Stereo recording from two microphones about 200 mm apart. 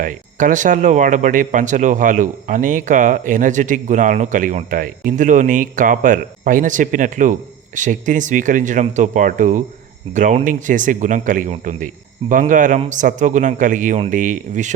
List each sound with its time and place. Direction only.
0.0 s speech: 40° right (ahead or behind)